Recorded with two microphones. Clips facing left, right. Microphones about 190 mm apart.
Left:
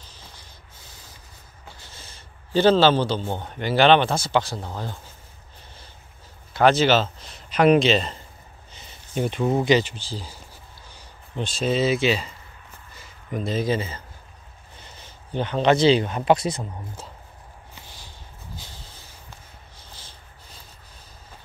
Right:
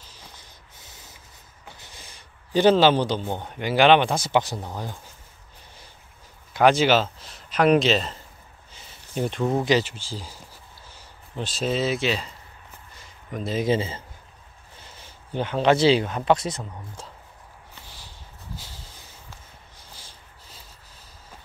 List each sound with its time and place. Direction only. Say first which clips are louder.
0.7 s snort: even; 20° right (ahead or behind)
1.8 s speech: left 1 dB; 15° right (ahead or behind)
6.5 s speech: even; 10° right (ahead or behind)
12.9 s a sound: left 4 dB; 5° left (ahead or behind)
13.7 s speech: right 2 dB; 25° right (ahead or behind)
15.0 s speech: left 1 dB; 10° right (ahead or behind); by 17.1 s 10° left (ahead or behind)